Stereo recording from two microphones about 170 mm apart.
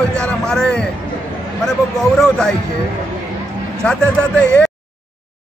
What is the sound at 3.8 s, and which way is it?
Speech, 5° left (ahead or behind).